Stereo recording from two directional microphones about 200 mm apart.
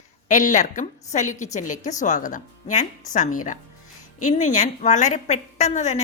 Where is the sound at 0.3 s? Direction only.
40° left (ahead or behind).